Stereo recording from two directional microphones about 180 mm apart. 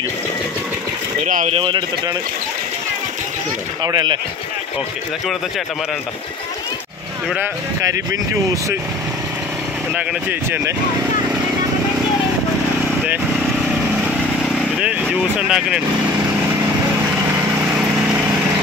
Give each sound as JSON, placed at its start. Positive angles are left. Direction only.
{"t": 1.2, "sound": "speech", "side_deg": -45}
{"t": 1.6, "sound": "speech", "side_deg": -25}
{"t": 3.8, "sound": "speech", "side_deg": -25}
{"t": 7.3, "sound": "speech", "side_deg": -15}
{"t": 14.8, "sound": "speech", "side_deg": -5}